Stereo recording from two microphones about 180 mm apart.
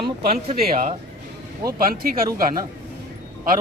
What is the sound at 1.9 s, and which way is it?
Speech, 55° right (ahead or behind).